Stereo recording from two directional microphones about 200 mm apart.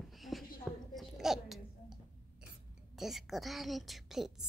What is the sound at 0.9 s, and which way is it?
Babbling, centre (ahead or behind).